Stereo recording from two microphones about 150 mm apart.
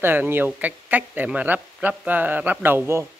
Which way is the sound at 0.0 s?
15° right (ahead or behind).